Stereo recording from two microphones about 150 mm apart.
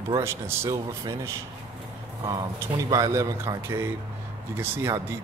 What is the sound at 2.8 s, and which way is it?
Speech, 25° right (ahead or behind).